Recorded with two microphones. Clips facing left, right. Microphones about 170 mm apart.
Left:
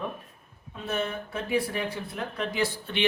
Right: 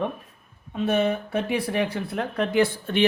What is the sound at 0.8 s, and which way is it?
Speech, 70° right (ahead or behind).